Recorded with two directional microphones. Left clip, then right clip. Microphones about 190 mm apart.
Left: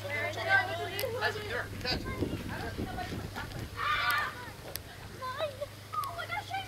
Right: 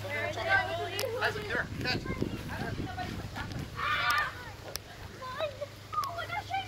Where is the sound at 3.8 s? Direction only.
45° right (ahead or behind).